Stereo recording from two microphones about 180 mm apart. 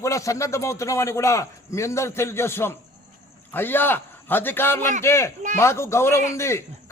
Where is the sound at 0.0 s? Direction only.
15° left (ahead or behind).